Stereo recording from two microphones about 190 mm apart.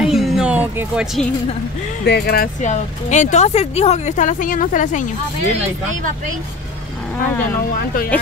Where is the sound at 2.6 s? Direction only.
40° left (ahead or behind).